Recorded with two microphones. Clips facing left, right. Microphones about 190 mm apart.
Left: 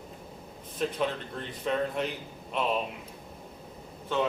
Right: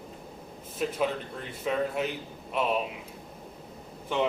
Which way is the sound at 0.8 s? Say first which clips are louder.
Right 1 dB; 5° right (ahead or behind).